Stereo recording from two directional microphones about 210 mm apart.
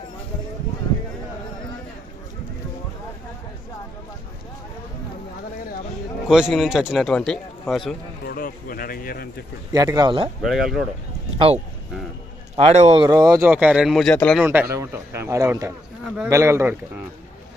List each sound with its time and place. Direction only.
6.2 s a man's voice: 5° right (ahead or behind)
8.3 s speech: 45° left (ahead or behind)
9.7 s speech: 20° right (ahead or behind)
10.4 s a man's voice: centre (ahead or behind)
12.5 s speech: 30° right (ahead or behind)
13.1 s a man's voice: 15° right (ahead or behind); by 14.4 s 5° left (ahead or behind)
14.4 s a man's voice: 10° right (ahead or behind)